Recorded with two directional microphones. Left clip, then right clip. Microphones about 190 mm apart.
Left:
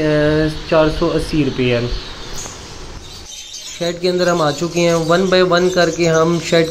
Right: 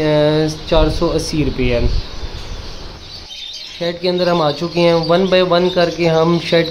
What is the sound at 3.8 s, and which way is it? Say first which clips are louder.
Speech: even; 5° left (ahead or behind).